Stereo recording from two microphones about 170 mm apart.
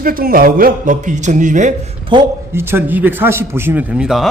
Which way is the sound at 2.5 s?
15° right (ahead or behind).